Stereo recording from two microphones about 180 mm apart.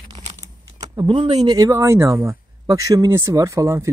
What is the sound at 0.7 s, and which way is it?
Speech, 25° right (ahead or behind).